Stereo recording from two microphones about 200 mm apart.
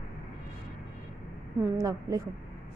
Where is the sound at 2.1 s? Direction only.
15° right (ahead or behind).